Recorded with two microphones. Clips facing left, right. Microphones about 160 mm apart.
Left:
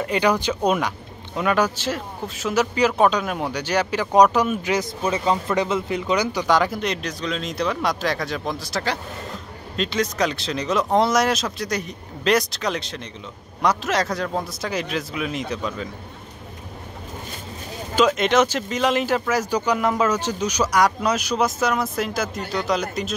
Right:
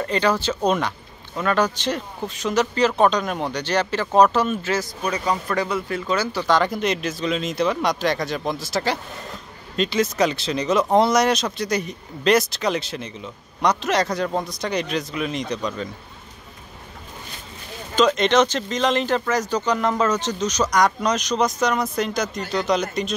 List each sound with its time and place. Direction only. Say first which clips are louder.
0.0 s speech: left 1 dB; 10° left (ahead or behind)
17.9 s speech: right 1 dB; 5° left (ahead or behind)